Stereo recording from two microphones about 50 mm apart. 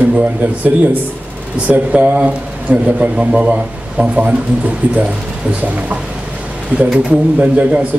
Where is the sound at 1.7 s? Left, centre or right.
Right.